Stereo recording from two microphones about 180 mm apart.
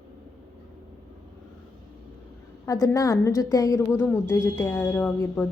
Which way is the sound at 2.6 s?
20° left (ahead or behind).